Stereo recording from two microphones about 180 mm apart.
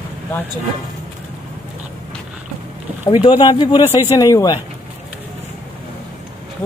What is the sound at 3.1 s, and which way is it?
Speech, 25° left (ahead or behind).